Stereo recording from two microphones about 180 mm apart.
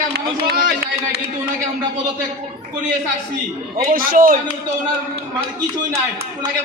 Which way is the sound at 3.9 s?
50° right (ahead or behind).